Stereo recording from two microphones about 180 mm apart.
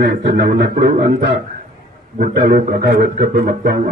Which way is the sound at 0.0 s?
65° right (ahead or behind).